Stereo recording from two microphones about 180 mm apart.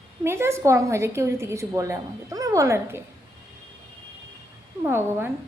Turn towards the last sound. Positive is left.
turn(degrees=-15)  # may be behind; listen again after turning